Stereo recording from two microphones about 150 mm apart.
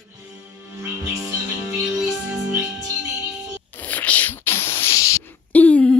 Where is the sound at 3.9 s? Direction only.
10° left (ahead or behind).